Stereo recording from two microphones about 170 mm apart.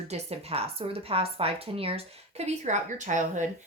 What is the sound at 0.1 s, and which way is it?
A woman's voice, 35° right (ahead or behind).